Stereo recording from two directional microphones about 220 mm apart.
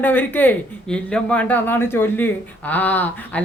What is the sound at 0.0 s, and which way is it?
Speech, 10° left (ahead or behind).